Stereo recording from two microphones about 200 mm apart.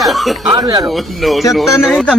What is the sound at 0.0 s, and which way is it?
Speech, centre (ahead or behind).